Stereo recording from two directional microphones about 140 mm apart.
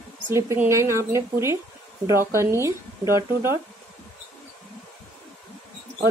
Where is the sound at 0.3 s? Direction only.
20° right (ahead or behind).